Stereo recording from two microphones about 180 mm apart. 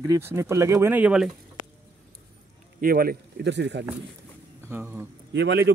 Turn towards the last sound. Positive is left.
turn(degrees=-75)  # may be behind; listen again after turning